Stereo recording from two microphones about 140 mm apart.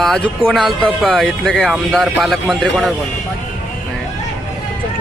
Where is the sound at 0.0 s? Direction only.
Centre (ahead or behind).